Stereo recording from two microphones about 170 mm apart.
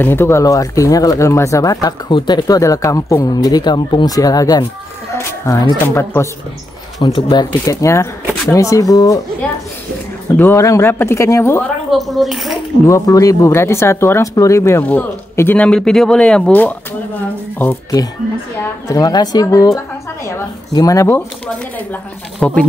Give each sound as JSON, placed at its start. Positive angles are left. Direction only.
{"t": 0.0, "sound": "speech", "side_deg": 15}
{"t": 7.0, "sound": "speech", "side_deg": 30}
{"t": 10.3, "sound": "speech", "side_deg": 15}
{"t": 11.9, "sound": "speech", "side_deg": 0}
{"t": 12.8, "sound": "speech", "side_deg": 20}
{"t": 18.9, "sound": "speech", "side_deg": 20}
{"t": 22.4, "sound": "speech", "side_deg": 5}